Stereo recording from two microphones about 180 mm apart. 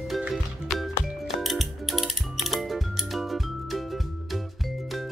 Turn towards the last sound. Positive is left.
turn(degrees=0)  # may be behind; listen again after turning